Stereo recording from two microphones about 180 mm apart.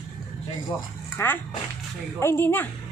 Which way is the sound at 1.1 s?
10° left (ahead or behind).